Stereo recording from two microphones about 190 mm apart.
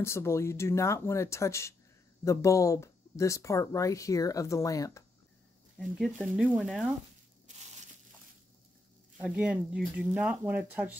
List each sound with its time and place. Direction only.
0.0 s speech: 15° left (ahead or behind)
5.8 s speech: centre (ahead or behind)
9.2 s speech: 5° right (ahead or behind)